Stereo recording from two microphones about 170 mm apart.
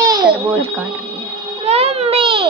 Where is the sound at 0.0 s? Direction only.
25° right (ahead or behind).